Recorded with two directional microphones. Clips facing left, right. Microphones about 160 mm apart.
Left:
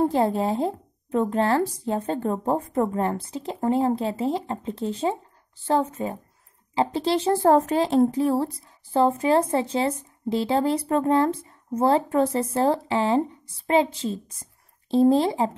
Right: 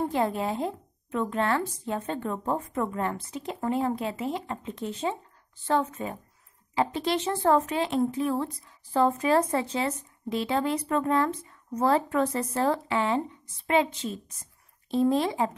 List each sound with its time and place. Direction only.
0.0 s speech: 35° left (ahead or behind)